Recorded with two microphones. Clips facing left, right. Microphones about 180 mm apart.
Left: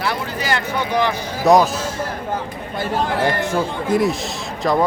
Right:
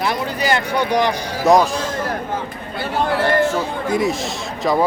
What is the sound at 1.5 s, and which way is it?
Speech, centre (ahead or behind).